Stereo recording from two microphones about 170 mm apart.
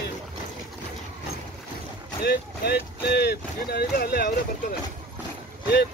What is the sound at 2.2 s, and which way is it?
Speech, 70° left (ahead or behind).